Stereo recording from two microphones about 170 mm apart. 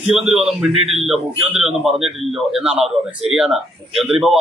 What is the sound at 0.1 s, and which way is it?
A man's voice, 5° right (ahead or behind).